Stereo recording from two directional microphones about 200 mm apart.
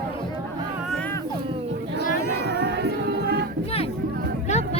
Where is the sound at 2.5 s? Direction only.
60° right (ahead or behind).